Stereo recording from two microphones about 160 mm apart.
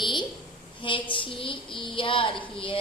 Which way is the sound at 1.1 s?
30° left (ahead or behind).